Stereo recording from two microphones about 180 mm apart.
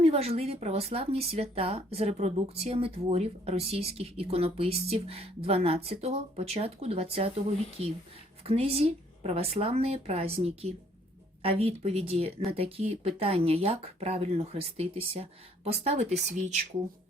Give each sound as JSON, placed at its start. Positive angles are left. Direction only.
{"t": 0.0, "sound": "speech", "side_deg": -35}